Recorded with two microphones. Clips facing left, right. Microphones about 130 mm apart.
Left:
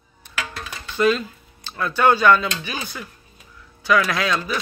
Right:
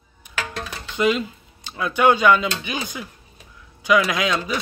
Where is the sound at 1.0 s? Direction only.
15° right (ahead or behind).